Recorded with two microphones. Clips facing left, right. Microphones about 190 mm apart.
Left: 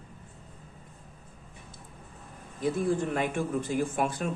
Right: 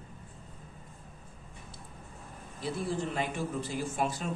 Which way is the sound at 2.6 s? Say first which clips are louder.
Left 6 dB; 50° left (ahead or behind).